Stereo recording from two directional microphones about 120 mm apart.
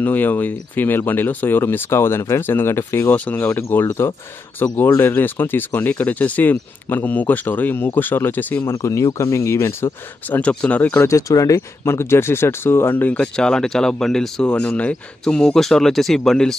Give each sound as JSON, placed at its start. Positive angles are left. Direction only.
{"t": 0.0, "sound": "speech", "side_deg": 15}
{"t": 8.7, "sound": "speech", "side_deg": 25}
{"t": 10.4, "sound": "speech", "side_deg": 10}
{"t": 11.1, "sound": "speech", "side_deg": 25}